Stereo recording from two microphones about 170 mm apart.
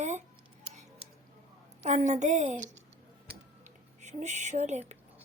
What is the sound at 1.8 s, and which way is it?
Speech, 45° right (ahead or behind).